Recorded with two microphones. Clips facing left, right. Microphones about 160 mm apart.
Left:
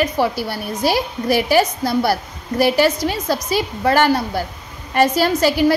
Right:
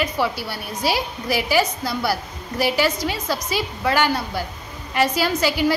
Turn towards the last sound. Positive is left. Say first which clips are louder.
# left 5 dB
turn(degrees=45)  # may be behind; listen again after turning